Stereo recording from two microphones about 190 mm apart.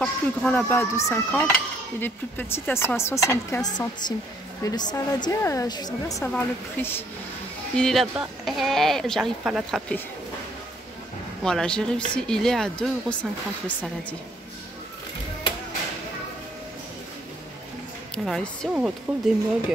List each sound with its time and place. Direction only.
0.0 s speech: 5° left (ahead or behind)
11.4 s speech: 5° left (ahead or behind)
18.1 s speech: 5° left (ahead or behind)
18.7 s speech: 10° right (ahead or behind)